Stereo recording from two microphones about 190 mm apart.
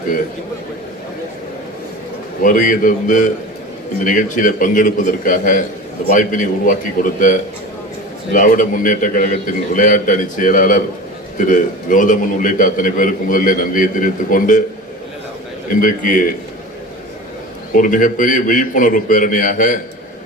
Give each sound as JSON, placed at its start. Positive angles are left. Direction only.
{"t": 2.4, "sound": "a man's voice", "side_deg": 45}
{"t": 15.8, "sound": "a man's voice", "side_deg": 45}
{"t": 17.7, "sound": "a man's voice", "side_deg": 45}